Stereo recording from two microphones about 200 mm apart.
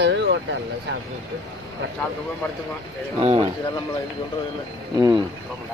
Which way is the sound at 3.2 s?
30° right (ahead or behind).